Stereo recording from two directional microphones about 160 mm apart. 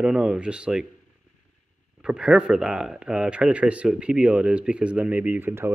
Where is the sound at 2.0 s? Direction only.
5° right (ahead or behind).